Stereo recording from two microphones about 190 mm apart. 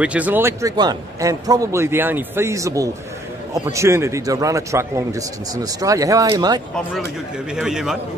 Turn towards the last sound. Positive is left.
turn(degrees=0)  # may be behind; listen again after turning